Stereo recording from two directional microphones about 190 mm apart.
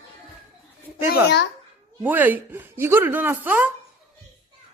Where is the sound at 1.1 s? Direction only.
60° left (ahead or behind).